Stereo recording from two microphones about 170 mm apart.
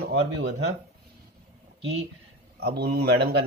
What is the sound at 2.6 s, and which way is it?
Speech, 70° right (ahead or behind).